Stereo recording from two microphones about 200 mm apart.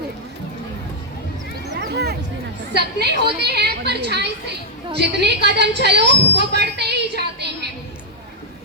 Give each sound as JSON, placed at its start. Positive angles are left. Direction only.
{"t": 1.9, "sound": "music", "side_deg": -55}
{"t": 2.7, "sound": "a woman's voice", "side_deg": -55}